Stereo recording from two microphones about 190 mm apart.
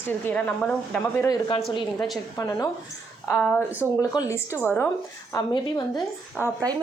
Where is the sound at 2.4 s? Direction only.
20° left (ahead or behind).